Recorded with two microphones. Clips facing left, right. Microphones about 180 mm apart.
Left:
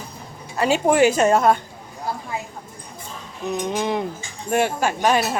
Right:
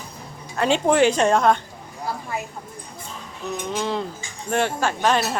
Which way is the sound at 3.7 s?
15° left (ahead or behind).